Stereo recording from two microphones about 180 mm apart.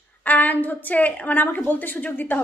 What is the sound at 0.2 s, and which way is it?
A woman's voice, 10° left (ahead or behind).